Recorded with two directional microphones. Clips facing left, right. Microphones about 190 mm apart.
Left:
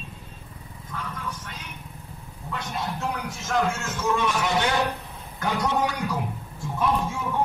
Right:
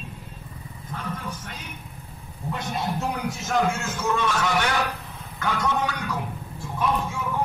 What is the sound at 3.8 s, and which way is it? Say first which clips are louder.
Speech: even; 10° right (ahead or behind).